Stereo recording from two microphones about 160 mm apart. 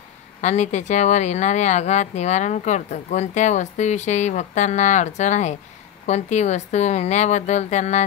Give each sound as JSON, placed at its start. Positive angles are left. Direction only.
{"t": 0.4, "sound": "speech", "side_deg": 45}